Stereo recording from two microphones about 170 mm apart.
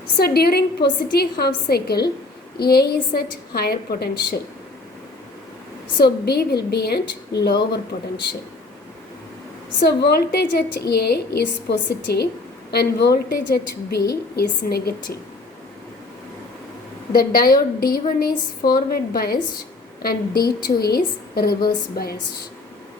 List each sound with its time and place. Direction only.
0.2 s a woman's voice: 65° left (ahead or behind)
6.0 s a woman's voice: 70° left (ahead or behind)
9.8 s a woman's voice: 70° left (ahead or behind)
17.1 s a woman's voice: 60° left (ahead or behind)